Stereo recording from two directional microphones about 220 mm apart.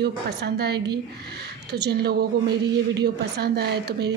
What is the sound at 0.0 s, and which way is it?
Speech, 50° right (ahead or behind).